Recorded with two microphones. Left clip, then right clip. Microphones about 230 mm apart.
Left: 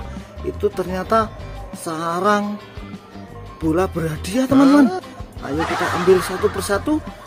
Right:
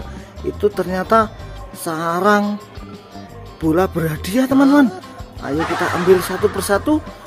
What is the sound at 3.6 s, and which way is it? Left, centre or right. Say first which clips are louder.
Speech: right 3 dB; centre.